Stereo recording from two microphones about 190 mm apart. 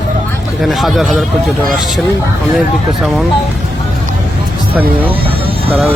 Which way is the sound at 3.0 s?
Centre (ahead or behind).